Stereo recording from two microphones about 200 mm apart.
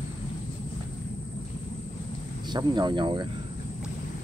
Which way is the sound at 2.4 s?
20° right (ahead or behind).